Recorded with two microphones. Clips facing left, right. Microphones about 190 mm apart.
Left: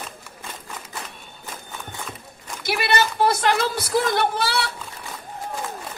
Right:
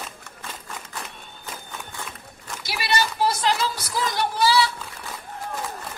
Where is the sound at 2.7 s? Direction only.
55° left (ahead or behind).